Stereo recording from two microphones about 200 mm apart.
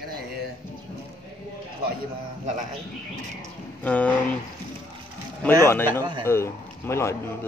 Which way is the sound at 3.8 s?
5° left (ahead or behind).